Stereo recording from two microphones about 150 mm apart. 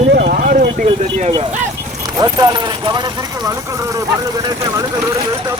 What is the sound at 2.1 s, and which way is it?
Speech, 25° right (ahead or behind).